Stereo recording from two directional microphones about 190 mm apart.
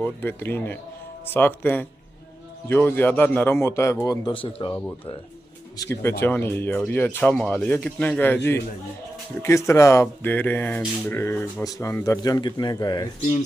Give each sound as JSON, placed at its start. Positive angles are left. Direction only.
{"t": 0.0, "sound": "a man's voice", "side_deg": 10}
{"t": 5.8, "sound": "a man's voice", "side_deg": 15}
{"t": 9.4, "sound": "a man's voice", "side_deg": 15}